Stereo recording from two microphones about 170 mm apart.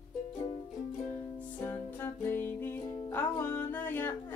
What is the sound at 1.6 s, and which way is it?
Music, 10° left (ahead or behind).